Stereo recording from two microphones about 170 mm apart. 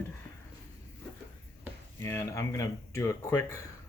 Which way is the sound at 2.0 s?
15° left (ahead or behind).